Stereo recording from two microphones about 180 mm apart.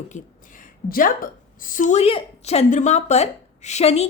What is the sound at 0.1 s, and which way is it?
A woman's voice, 50° left (ahead or behind).